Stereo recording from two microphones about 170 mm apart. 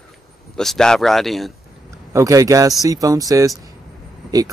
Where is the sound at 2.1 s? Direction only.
20° right (ahead or behind).